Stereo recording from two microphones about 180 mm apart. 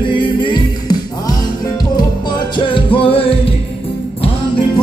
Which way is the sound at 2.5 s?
25° left (ahead or behind).